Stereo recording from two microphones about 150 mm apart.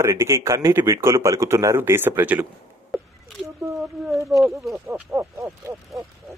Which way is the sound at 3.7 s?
Centre (ahead or behind).